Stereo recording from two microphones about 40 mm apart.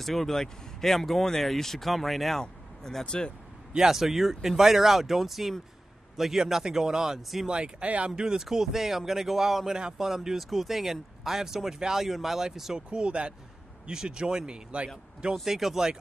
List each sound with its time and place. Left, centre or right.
0.0 s speech: centre
3.1 s speech: left
3.7 s a man's voice: centre
7.2 s speech: centre
7.4 s speech: right
7.8 s speech: right
8.2 s speech: centre
8.5 s speech: centre
12.9 s speech: right
15.3 s speech: centre